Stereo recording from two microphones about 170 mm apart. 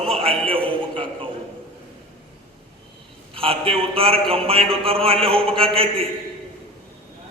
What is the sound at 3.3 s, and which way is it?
A man's voice, 35° right (ahead or behind).